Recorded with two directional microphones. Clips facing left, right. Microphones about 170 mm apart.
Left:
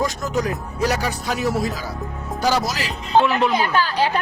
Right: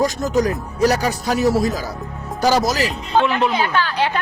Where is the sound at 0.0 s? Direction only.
40° right (ahead or behind).